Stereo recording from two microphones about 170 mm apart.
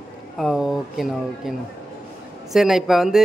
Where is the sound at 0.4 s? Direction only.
Centre (ahead or behind).